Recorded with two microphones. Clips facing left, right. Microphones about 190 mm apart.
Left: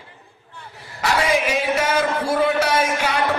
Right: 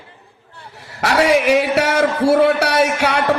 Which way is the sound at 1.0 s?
70° right (ahead or behind).